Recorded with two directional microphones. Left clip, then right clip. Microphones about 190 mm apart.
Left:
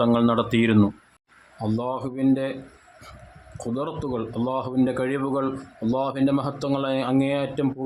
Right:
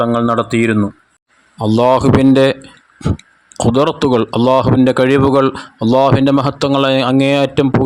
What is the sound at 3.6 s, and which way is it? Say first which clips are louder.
A man's voice: right 16 dB; 50° right (ahead or behind).